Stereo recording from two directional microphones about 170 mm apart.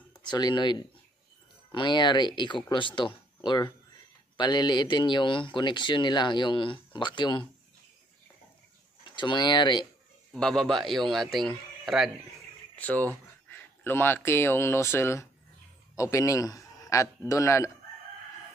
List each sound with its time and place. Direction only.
0.2 s speech: 25° left (ahead or behind)
9.0 s speech: 30° left (ahead or behind)
10.3 s a man's voice: 5° left (ahead or behind)